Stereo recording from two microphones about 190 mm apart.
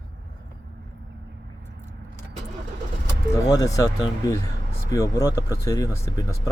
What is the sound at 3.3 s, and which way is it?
Speech, 15° left (ahead or behind).